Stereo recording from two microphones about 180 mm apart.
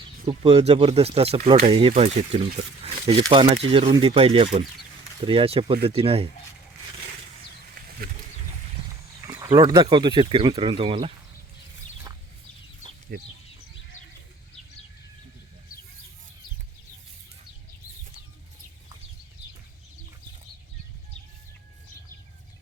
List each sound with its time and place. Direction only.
0.3 s speech: 35° right (ahead or behind)
7.8 s wild animals: 55° right (ahead or behind)
9.2 s speech: 15° right (ahead or behind)
13.1 s speech: 55° right (ahead or behind)